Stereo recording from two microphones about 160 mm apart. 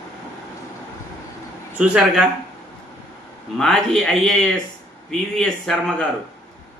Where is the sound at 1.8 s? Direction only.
5° right (ahead or behind).